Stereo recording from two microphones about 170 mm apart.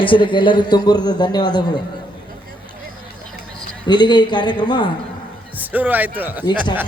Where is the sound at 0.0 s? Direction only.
30° left (ahead or behind).